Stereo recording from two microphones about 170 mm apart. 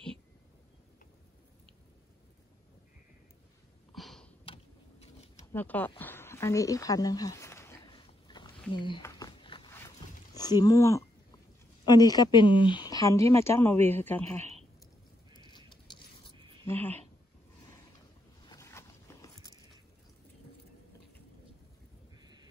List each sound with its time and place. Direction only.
3.9 s a sound: centre (ahead or behind)
5.0 s mechanisms: 40° left (ahead or behind)
5.5 s speech: 10° left (ahead or behind)
8.3 s a sound: 25° left (ahead or behind)
9.7 s a sound: 15° left (ahead or behind)
11.8 s speech: 25° left (ahead or behind)
16.6 s speech: 10° left (ahead or behind)
18.5 s biting: 15° left (ahead or behind)
22.2 s crow: 25° right (ahead or behind)